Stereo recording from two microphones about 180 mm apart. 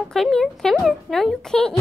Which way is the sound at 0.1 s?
Centre (ahead or behind).